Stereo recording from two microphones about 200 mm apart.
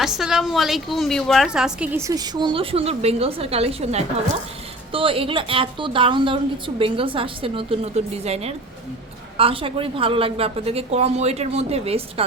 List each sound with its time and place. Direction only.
0.0 s a woman's voice: centre (ahead or behind); by 12.2 s 30° right (ahead or behind)